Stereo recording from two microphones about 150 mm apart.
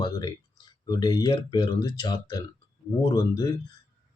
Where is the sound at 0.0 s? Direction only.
25° left (ahead or behind).